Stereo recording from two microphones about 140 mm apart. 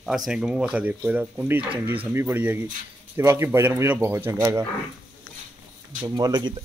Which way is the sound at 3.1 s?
20° right (ahead or behind).